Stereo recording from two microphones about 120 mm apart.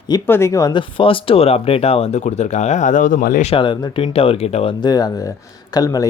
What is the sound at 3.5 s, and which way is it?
Speech, 45° left (ahead or behind).